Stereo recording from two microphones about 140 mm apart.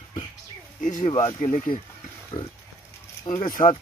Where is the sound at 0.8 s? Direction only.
65° left (ahead or behind).